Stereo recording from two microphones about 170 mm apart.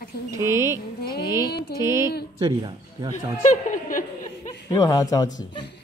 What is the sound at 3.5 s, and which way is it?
Chuckle, 50° left (ahead or behind).